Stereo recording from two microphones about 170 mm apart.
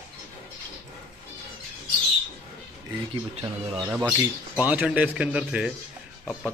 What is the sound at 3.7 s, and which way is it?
A man's voice, 20° right (ahead or behind).